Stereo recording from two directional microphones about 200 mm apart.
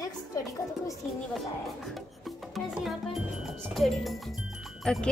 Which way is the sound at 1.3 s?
Centre (ahead or behind).